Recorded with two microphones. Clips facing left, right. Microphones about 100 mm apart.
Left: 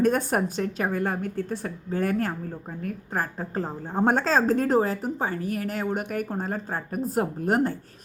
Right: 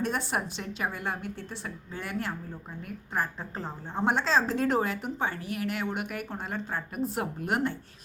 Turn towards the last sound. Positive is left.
turn(degrees=40)  # may be behind; listen again after turning